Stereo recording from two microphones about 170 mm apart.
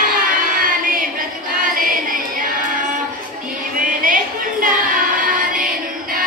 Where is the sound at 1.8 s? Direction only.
55° right (ahead or behind).